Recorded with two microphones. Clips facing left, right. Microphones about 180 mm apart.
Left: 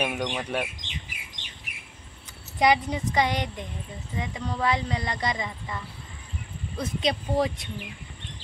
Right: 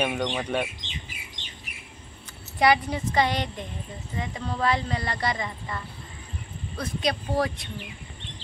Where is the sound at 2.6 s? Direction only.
15° left (ahead or behind).